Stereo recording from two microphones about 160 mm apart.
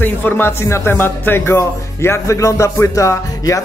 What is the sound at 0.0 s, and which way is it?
Speech, 10° left (ahead or behind).